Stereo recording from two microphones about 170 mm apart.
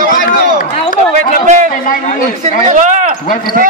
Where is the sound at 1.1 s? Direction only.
50° right (ahead or behind).